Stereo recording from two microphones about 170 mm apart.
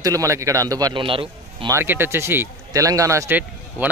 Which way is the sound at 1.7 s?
15° right (ahead or behind).